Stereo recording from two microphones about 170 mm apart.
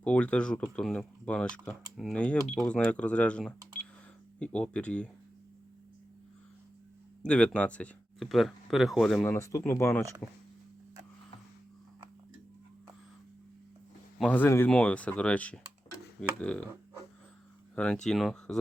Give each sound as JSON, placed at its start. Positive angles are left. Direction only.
{"t": 0.0, "sound": "speech", "side_deg": 5}
{"t": 7.2, "sound": "speech", "side_deg": 5}
{"t": 9.2, "sound": "speech", "side_deg": 15}
{"t": 14.2, "sound": "speech", "side_deg": 10}
{"t": 17.7, "sound": "speech", "side_deg": 5}